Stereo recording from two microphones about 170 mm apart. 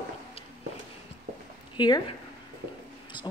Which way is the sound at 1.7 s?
25° left (ahead or behind).